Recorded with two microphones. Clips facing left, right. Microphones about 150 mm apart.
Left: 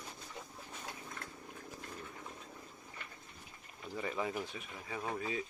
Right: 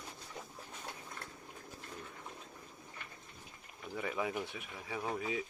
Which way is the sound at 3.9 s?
5° right (ahead or behind).